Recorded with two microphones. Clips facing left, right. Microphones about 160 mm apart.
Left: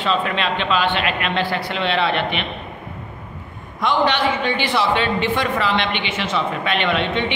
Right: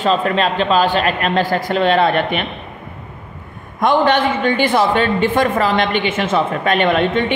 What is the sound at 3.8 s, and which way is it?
A man's voice, 50° right (ahead or behind).